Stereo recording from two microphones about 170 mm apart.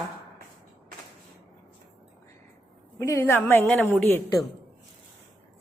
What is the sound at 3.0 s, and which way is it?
Speech, 15° left (ahead or behind).